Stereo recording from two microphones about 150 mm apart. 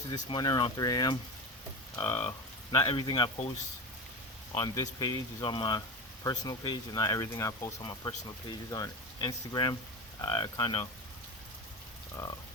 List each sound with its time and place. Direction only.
0.1 s speech: 30° left (ahead or behind)
4.5 s speech: 25° left (ahead or behind)
12.1 s speech: 25° left (ahead or behind)